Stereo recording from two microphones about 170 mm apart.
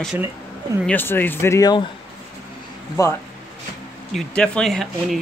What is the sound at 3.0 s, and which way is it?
Speech, 20° left (ahead or behind).